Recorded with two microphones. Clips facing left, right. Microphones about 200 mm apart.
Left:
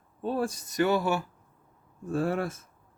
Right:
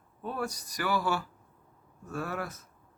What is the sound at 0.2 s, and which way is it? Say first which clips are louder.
A man's voice: left 6 dB; 30° left (ahead or behind).